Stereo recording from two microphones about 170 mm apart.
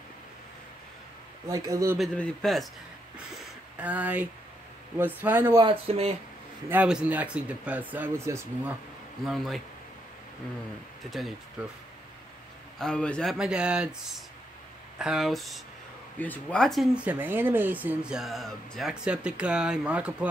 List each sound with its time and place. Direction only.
1.5 s a man's voice: 20° right (ahead or behind)
2.0 s speech: 5° left (ahead or behind)
3.7 s speech: 10° right (ahead or behind)
5.6 s speech: 35° right (ahead or behind)
6.7 s speech: 5° right (ahead or behind)
11.6 s speech: 5° right (ahead or behind)